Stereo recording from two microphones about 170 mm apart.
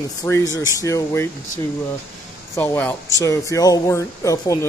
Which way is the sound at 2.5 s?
15° left (ahead or behind).